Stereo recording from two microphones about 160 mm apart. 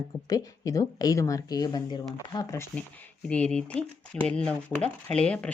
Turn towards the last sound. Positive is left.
turn(degrees=5)  # may be behind; listen again after turning